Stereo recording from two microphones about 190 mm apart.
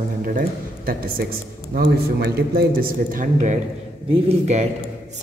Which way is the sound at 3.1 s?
40° right (ahead or behind).